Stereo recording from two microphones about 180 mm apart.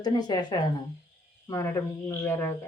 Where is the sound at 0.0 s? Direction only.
25° left (ahead or behind).